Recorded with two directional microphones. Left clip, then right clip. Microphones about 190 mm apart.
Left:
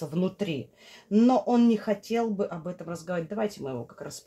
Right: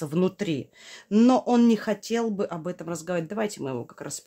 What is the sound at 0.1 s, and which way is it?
Speech, 35° right (ahead or behind).